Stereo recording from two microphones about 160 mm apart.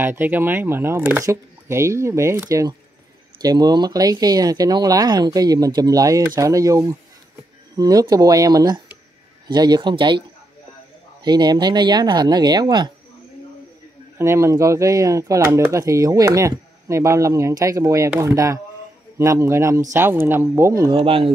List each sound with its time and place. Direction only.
0.0 s speech: 15° right (ahead or behind); by 10.2 s 30° right (ahead or behind)
11.2 s speech: 25° right (ahead or behind)
14.1 s speech: 15° right (ahead or behind)
20.9 s speech: 35° right (ahead or behind)